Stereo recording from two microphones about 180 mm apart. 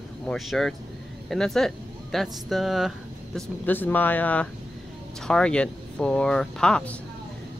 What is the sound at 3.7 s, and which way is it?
Speech, 10° left (ahead or behind).